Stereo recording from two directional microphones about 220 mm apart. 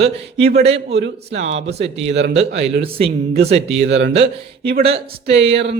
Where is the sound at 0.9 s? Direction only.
50° right (ahead or behind).